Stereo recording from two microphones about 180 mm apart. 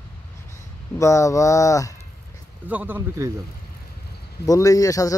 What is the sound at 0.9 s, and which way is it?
Speech, 15° left (ahead or behind).